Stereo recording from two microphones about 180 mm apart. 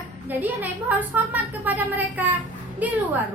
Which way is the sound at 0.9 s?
10° right (ahead or behind).